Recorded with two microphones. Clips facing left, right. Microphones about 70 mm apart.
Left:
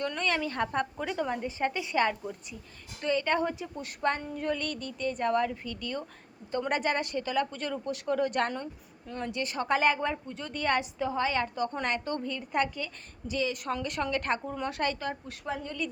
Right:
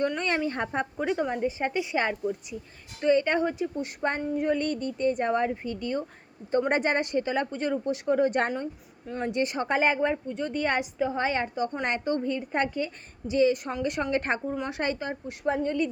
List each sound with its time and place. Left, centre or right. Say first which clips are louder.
0.0 s speech: right 4 dB; right
11.1 s speech: right 2 dB; right
15.4 s speech: right 8 dB; right